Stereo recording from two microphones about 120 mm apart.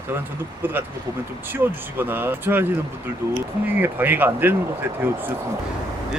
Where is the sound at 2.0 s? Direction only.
15° right (ahead or behind).